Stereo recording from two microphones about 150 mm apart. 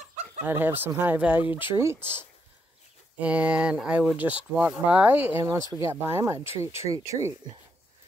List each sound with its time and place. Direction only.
0.5 s speech: 15° right (ahead or behind)
5.4 s speech: 25° right (ahead or behind)